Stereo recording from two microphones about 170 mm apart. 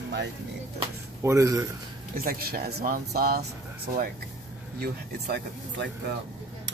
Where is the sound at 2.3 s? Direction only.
60° right (ahead or behind).